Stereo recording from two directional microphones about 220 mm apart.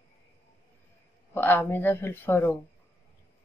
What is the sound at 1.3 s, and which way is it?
Speech, 10° left (ahead or behind).